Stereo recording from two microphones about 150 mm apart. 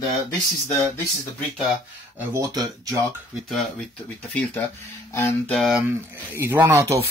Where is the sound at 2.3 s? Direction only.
20° right (ahead or behind).